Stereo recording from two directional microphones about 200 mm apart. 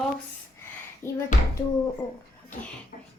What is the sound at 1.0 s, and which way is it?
Speech, 15° right (ahead or behind).